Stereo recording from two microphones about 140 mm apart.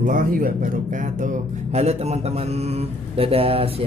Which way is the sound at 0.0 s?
70° right (ahead or behind).